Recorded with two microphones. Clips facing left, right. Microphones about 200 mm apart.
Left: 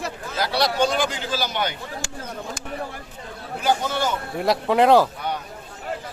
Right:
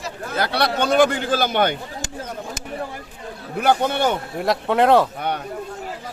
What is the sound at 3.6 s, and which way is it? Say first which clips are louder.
Speech: right 4 dB; 60° right (ahead or behind).